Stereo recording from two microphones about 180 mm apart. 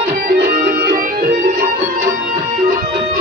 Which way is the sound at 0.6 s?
55° right (ahead or behind).